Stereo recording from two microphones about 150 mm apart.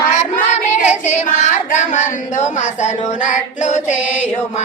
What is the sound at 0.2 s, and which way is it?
Child singing, 50° left (ahead or behind).